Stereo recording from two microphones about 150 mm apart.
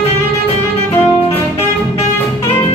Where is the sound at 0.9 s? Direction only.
15° left (ahead or behind).